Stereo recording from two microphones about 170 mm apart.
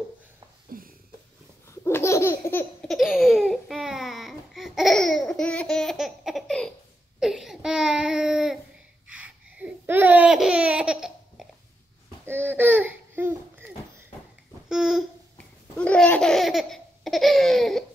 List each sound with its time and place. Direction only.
0.7 s a sound: 55° right (ahead or behind)
1.7 s laughter: 15° left (ahead or behind)
2.9 s laughter: centre (ahead or behind)
7.2 s a sound: centre (ahead or behind)
9.1 s laughter: 5° right (ahead or behind)
12.3 s babbling: 10° right (ahead or behind)
14.7 s babbling: 5° right (ahead or behind)
15.3 s laughter: 5° left (ahead or behind)